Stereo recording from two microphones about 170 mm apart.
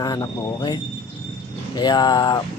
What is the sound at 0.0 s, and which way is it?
Speech, 25° left (ahead or behind).